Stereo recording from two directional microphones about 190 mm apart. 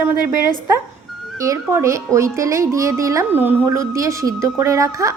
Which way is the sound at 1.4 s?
15° right (ahead or behind).